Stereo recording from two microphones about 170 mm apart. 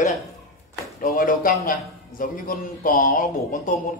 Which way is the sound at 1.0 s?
55° left (ahead or behind).